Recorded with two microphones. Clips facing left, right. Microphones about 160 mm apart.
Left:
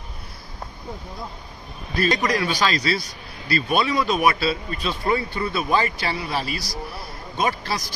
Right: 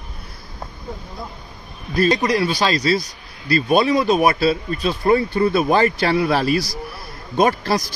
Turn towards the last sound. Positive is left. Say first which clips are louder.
# right 7 dB
turn(degrees=-45)  # may be behind; listen again after turning